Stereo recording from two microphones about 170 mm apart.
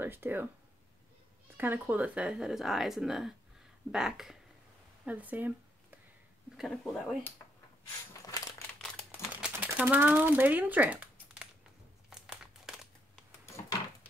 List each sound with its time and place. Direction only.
0.0 s speech: 10° right (ahead or behind)
1.6 s speech: 10° right (ahead or behind)
5.0 s a sound: 10° right (ahead or behind)
6.5 s speech: centre (ahead or behind)
8.3 s crumpling: 20° left (ahead or behind)
9.3 s typewriter: 10° right (ahead or behind)
12.1 s crumpling: 5° right (ahead or behind)